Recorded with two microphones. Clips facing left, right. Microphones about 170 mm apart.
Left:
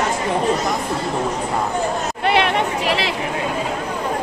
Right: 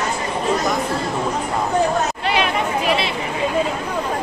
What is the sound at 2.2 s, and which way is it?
Chatter, 65° left (ahead or behind).